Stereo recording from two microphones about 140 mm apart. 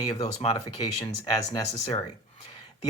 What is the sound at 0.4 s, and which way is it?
Speech, 30° left (ahead or behind).